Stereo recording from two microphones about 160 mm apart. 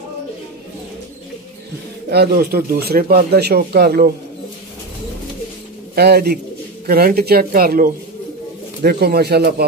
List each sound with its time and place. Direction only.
2.0 s speech: 90° right
5.9 s speech: 85° right
6.9 s speech: 70° right (ahead or behind)
8.8 s speech: 80° right